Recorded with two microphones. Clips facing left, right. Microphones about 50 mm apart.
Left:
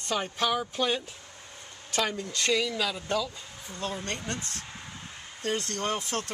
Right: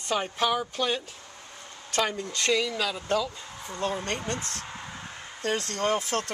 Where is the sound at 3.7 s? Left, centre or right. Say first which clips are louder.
Right 4 dB; right.